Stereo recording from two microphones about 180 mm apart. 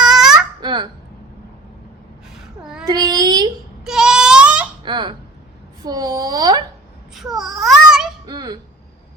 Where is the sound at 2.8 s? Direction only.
20° right (ahead or behind).